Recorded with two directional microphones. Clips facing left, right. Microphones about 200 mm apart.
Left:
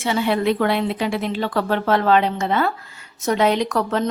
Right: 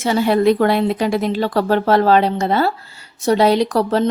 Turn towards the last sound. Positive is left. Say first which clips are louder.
# right 5 dB
turn(degrees=-35)  # may be behind; listen again after turning